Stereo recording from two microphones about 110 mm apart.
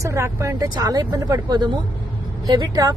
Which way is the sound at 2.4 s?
35° right (ahead or behind).